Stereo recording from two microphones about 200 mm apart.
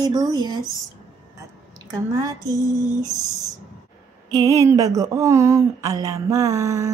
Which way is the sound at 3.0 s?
15° left (ahead or behind).